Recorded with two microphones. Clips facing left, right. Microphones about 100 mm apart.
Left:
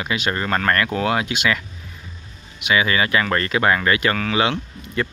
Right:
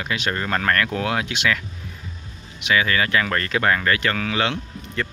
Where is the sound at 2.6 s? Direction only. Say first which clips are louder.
Left 1 dB; 10° left (ahead or behind).